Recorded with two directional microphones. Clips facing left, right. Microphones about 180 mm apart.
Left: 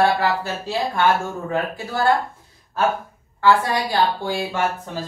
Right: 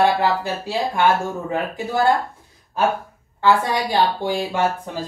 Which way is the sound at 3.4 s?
20° right (ahead or behind).